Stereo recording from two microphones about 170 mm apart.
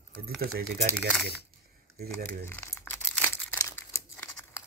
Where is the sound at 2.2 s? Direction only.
10° left (ahead or behind).